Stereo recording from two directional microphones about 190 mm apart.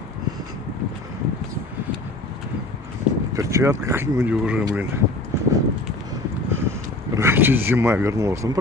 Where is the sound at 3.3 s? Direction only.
15° right (ahead or behind).